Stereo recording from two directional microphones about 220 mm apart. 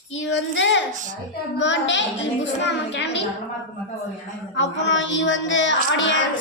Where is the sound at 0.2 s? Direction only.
55° left (ahead or behind).